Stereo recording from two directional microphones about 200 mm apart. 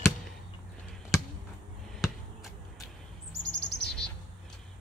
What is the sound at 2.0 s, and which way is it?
Basketball bounce, centre (ahead or behind).